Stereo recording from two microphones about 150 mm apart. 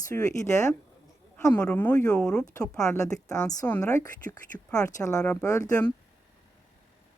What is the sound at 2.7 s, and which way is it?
Speech, 20° left (ahead or behind).